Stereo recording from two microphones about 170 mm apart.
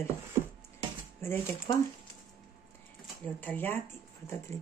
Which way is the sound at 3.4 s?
10° left (ahead or behind).